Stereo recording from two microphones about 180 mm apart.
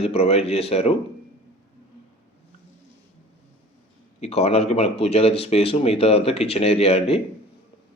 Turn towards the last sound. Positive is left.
turn(degrees=35)  # may be behind; listen again after turning